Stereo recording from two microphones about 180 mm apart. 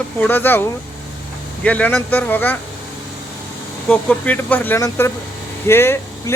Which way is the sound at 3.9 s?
10° left (ahead or behind).